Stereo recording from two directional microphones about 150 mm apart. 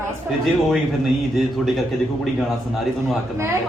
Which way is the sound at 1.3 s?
Centre (ahead or behind).